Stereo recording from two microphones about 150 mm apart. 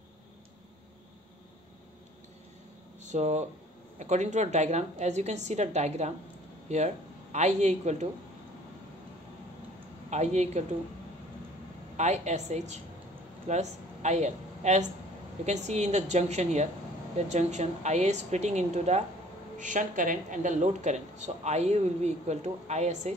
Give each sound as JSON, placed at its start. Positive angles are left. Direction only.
{"t": 3.1, "sound": "speech", "side_deg": -50}
{"t": 7.3, "sound": "speech", "side_deg": -50}
{"t": 10.0, "sound": "speech", "side_deg": -50}
{"t": 12.0, "sound": "speech", "side_deg": -50}